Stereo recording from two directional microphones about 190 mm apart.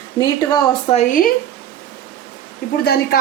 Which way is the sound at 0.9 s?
40° left (ahead or behind).